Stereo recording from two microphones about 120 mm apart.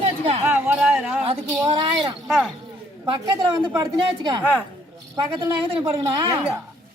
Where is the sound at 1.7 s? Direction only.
35° right (ahead or behind).